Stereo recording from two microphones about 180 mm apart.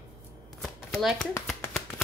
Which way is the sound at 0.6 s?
Centre (ahead or behind).